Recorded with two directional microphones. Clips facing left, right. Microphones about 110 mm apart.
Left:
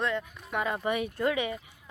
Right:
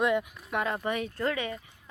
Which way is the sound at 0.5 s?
5° left (ahead or behind).